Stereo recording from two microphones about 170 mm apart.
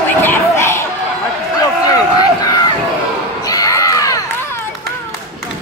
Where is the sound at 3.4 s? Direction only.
20° left (ahead or behind).